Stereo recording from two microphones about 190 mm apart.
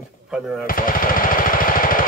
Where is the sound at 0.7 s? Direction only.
45° left (ahead or behind).